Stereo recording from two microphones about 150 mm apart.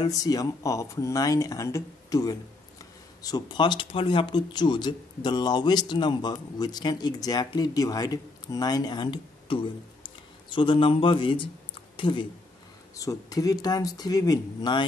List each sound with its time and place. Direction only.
0.0 s speech: 25° left (ahead or behind)